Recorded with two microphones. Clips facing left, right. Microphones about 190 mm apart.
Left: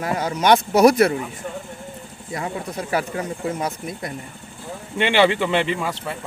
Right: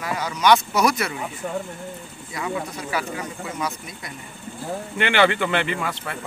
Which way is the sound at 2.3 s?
50° left (ahead or behind).